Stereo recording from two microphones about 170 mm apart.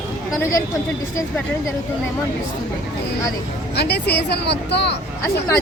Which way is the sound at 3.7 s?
75° left (ahead or behind).